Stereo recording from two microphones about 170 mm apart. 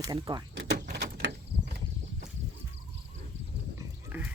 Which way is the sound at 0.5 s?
85° right.